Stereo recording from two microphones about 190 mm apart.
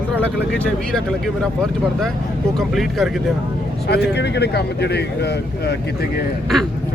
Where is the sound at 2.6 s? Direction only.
Centre (ahead or behind).